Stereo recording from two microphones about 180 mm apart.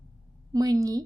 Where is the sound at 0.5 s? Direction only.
20° right (ahead or behind).